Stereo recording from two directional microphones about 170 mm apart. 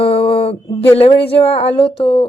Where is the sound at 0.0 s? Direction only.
35° left (ahead or behind).